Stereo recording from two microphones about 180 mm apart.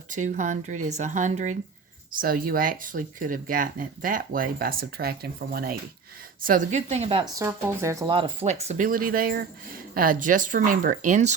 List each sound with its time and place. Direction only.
0.1 s speech: 45° right (ahead or behind)
2.1 s a woman's voice: 55° right (ahead or behind); by 7.3 s 35° right (ahead or behind)
7.3 s speech: 15° right (ahead or behind)
8.0 s speech: 30° right (ahead or behind)